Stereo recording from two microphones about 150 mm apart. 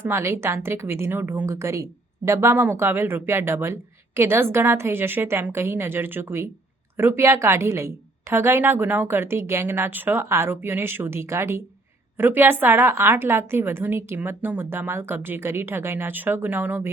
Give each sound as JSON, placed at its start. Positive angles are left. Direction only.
{"t": 0.0, "sound": "speech", "side_deg": -20}